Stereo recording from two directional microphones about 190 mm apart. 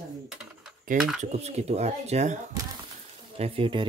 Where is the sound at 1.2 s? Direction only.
35° right (ahead or behind).